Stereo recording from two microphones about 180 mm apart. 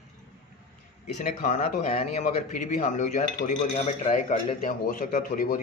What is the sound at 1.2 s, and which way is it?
A man's voice, 45° left (ahead or behind).